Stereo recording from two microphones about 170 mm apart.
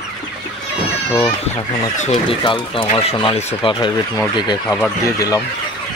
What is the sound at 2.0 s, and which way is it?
Speech, 35° left (ahead or behind).